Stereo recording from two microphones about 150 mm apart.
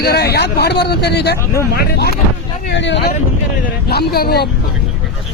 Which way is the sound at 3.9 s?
90° left.